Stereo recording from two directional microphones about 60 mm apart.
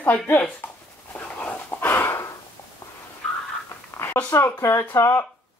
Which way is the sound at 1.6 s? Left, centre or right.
Left.